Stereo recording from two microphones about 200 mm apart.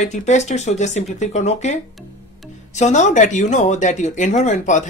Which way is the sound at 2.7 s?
35° left (ahead or behind).